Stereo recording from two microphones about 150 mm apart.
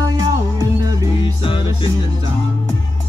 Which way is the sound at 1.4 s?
35° left (ahead or behind).